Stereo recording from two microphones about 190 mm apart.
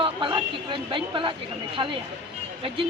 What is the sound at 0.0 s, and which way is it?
Speech, 25° right (ahead or behind).